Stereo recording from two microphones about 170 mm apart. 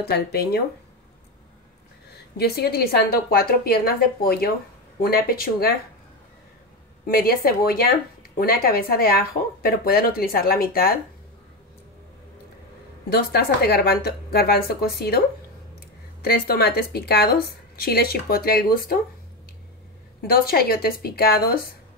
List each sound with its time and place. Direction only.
0.1 s speech: 65° left (ahead or behind)
2.3 s speech: 70° left (ahead or behind)
7.1 s speech: 60° left (ahead or behind)
13.1 s speech: 65° left (ahead or behind)
16.3 s speech: 65° left (ahead or behind)
20.2 s speech: 60° left (ahead or behind)